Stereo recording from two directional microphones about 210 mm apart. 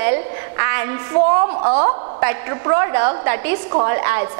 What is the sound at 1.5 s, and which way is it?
A woman's voice, 30° right (ahead or behind).